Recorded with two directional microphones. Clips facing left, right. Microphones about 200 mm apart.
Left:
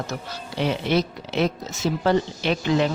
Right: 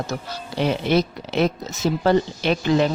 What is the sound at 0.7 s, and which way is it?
Speech, 45° right (ahead or behind).